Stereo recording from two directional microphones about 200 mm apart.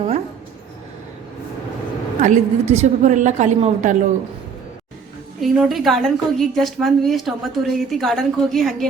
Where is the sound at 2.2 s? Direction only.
35° right (ahead or behind).